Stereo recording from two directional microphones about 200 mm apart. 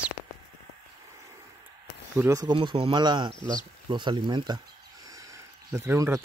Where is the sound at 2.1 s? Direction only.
15° right (ahead or behind).